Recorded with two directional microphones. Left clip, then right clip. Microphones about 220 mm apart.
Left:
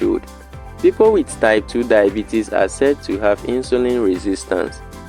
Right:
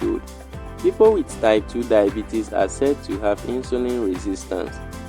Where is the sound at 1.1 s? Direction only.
20° left (ahead or behind).